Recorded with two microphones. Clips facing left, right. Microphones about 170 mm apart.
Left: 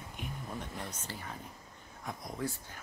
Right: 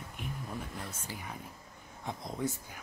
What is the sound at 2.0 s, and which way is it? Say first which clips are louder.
Speech: right 2 dB; 20° right (ahead or behind).